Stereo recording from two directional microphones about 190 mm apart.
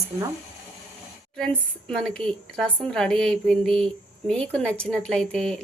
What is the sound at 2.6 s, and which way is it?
Speech, centre (ahead or behind).